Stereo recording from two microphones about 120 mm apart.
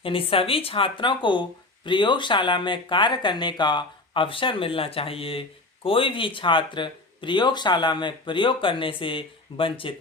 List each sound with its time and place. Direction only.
0.0 s speech: 50° left (ahead or behind)